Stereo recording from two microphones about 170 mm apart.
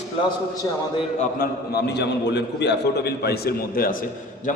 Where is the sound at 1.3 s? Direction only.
65° left (ahead or behind).